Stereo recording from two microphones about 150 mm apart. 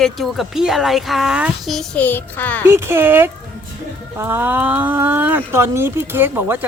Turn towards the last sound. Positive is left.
turn(degrees=-15)  # may be behind; listen again after turning